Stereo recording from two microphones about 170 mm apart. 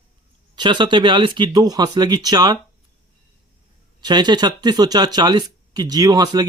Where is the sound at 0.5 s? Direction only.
25° right (ahead or behind).